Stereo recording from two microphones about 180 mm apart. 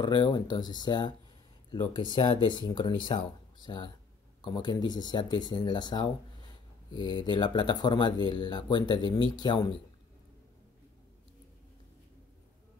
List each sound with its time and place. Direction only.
0.0 s speech: 25° left (ahead or behind)
2.1 s speech: 25° left (ahead or behind)